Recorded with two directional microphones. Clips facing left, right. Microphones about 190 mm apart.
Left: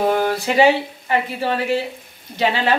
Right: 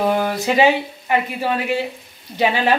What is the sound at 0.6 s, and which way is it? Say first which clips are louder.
Speech: left 2 dB; 15° right (ahead or behind).